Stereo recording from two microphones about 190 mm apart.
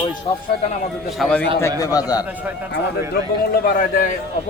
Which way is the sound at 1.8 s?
20° left (ahead or behind).